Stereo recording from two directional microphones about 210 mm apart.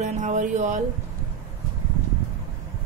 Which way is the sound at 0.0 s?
35° right (ahead or behind).